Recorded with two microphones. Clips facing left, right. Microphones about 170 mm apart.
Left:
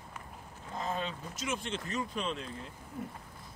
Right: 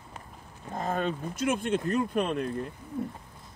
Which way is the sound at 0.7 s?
50° right (ahead or behind).